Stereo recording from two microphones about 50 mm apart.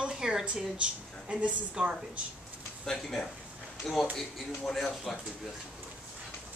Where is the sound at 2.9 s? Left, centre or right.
Centre.